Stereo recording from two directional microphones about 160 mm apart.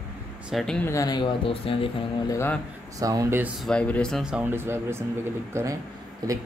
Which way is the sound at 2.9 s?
20° right (ahead or behind).